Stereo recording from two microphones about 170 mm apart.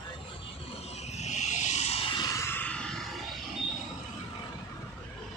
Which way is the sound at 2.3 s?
10° left (ahead or behind).